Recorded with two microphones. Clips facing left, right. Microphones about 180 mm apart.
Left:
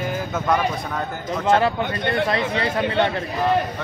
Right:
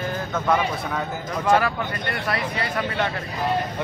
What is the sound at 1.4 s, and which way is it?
Speech, 25° left (ahead or behind).